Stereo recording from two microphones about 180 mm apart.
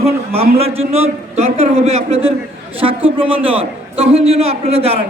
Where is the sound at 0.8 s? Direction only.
35° right (ahead or behind).